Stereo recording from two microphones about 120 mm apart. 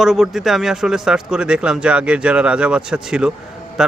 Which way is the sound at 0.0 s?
5° right (ahead or behind).